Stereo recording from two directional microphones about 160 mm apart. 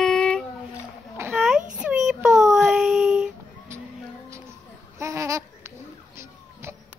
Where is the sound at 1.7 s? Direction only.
5° right (ahead or behind).